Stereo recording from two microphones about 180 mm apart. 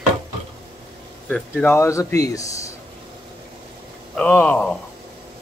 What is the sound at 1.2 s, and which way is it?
Speech, 5° left (ahead or behind).